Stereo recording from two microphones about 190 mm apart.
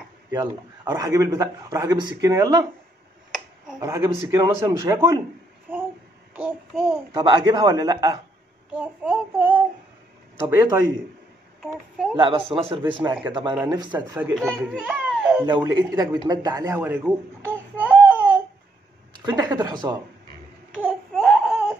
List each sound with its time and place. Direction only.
0.3 s a man's voice: 20° right (ahead or behind)
3.8 s a man's voice: 15° right (ahead or behind)
6.3 s child singing: 5° right (ahead or behind)
7.2 s a man's voice: 25° right (ahead or behind)
8.7 s a man's voice: 5° right (ahead or behind)
11.6 s a child's voice: centre (ahead or behind)
12.2 s a man's voice: 30° right (ahead or behind)
14.1 s a man's voice: 10° right (ahead or behind)
15.4 s a man's voice: 20° right (ahead or behind)
19.2 s a man's voice: 20° right (ahead or behind)
20.7 s a sound: centre (ahead or behind)